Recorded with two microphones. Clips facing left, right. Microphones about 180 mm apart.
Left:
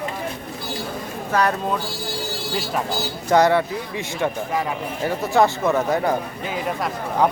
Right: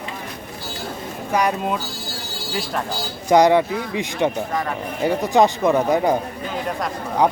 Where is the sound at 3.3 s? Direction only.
15° right (ahead or behind).